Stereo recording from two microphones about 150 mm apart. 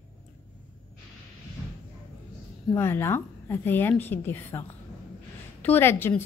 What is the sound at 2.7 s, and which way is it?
Speech, 15° left (ahead or behind).